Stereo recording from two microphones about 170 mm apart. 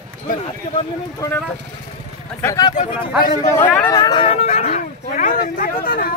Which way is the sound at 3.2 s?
55° left (ahead or behind).